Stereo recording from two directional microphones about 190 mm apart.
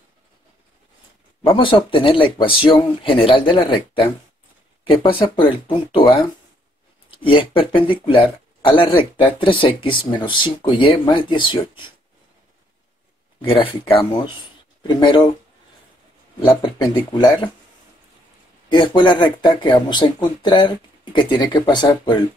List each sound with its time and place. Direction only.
1.4 s speech: 25° left (ahead or behind)
7.2 s speech: 25° left (ahead or behind)
13.5 s speech: 30° left (ahead or behind)
16.3 s speech: 25° left (ahead or behind)
18.7 s speech: 25° left (ahead or behind)